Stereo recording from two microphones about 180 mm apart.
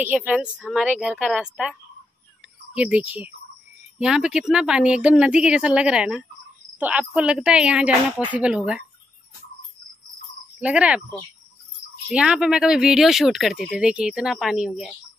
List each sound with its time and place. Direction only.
0.0 s speech: 10° right (ahead or behind)
10.6 s speech: 5° right (ahead or behind)
12.1 s speech: 5° right (ahead or behind)